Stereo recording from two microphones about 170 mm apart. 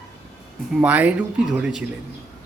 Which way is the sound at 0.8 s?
10° right (ahead or behind).